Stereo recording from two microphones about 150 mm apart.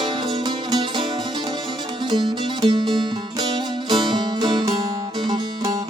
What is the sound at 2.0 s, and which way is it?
Music, 30° right (ahead or behind).